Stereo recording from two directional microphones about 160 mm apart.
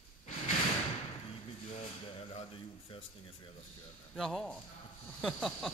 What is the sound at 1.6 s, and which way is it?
Speech, 40° left (ahead or behind).